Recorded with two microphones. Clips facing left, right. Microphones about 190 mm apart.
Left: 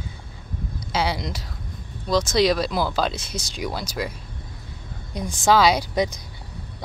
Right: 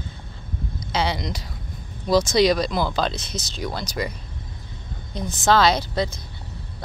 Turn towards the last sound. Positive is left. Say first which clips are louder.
# left 1 dB
turn(degrees=15)  # may be behind; listen again after turning